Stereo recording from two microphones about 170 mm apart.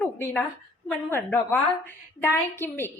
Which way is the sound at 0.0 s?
10° left (ahead or behind).